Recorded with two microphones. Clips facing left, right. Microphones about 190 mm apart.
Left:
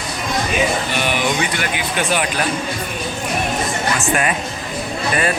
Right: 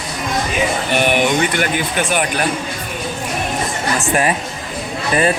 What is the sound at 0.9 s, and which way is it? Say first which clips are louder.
Speech: right 4 dB; 50° right (ahead or behind).